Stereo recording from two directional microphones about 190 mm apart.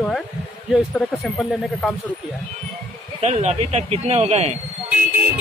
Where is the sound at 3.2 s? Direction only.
35° right (ahead or behind).